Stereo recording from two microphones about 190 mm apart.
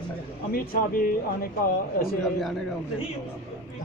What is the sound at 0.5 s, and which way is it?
Speech, 50° left (ahead or behind).